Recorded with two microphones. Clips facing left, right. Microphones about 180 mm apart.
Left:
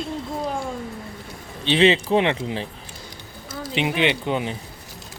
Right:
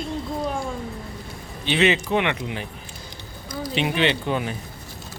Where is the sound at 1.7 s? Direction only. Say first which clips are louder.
Left 3 dB; 30° left (ahead or behind).